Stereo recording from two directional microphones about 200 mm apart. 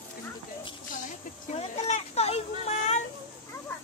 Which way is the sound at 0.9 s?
35° left (ahead or behind).